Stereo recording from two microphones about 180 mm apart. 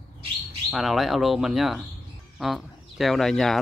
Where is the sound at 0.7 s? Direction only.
Centre (ahead or behind).